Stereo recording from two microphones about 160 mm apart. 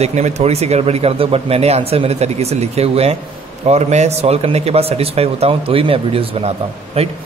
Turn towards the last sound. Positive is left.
turn(degrees=-40)  # may be behind; listen again after turning